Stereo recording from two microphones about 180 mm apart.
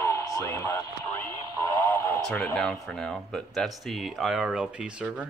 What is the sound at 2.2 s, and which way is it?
Speech, 5° left (ahead or behind).